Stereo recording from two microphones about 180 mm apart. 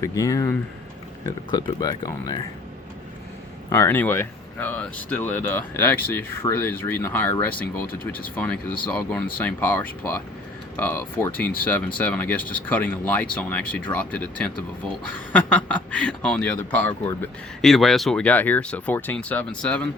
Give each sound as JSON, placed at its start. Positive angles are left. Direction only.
{"t": 0.0, "sound": "speech", "side_deg": 20}
{"t": 3.7, "sound": "speech", "side_deg": 15}
{"t": 7.9, "sound": "speech", "side_deg": 50}
{"t": 8.9, "sound": "speech", "side_deg": 5}